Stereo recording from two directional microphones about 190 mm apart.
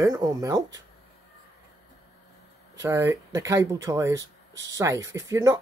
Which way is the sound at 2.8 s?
15° right (ahead or behind).